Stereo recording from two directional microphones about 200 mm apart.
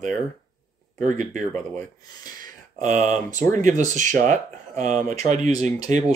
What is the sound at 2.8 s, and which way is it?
Speech, 40° right (ahead or behind).